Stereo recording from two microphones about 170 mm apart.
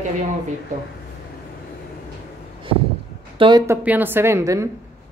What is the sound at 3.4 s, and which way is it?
Speech, 25° right (ahead or behind).